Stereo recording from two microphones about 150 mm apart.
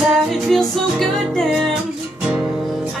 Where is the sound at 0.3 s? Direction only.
Centre (ahead or behind).